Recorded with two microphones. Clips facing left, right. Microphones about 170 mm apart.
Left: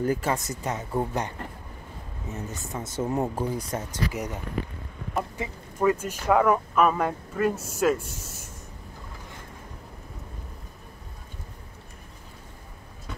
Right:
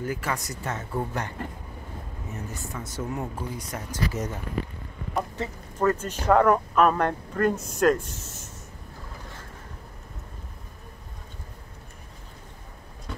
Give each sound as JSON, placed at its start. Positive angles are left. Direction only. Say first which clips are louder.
{"t": 0.0, "sound": "speech", "louder": "left 4 dB", "side_deg": 30}
{"t": 2.3, "sound": "speech", "louder": "left 2 dB", "side_deg": 20}
{"t": 3.9, "sound": "speech", "louder": "right 5 dB", "side_deg": 15}